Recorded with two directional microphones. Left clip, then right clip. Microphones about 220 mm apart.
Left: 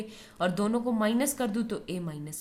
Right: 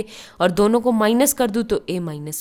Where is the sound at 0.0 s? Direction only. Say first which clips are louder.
Right 11 dB; 45° right (ahead or behind).